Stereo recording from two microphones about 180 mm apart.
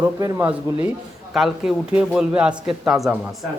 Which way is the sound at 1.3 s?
Centre (ahead or behind).